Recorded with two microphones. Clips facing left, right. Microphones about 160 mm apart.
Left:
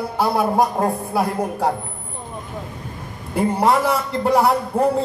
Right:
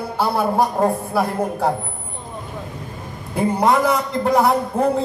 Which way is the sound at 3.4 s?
10° left (ahead or behind).